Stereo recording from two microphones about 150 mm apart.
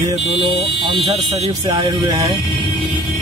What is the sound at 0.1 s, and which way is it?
Speech, 35° right (ahead or behind).